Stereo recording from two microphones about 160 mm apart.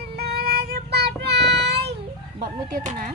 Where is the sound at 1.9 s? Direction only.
45° right (ahead or behind).